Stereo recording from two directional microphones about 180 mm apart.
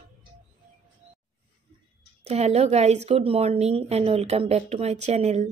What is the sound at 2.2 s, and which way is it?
Speech, 35° right (ahead or behind).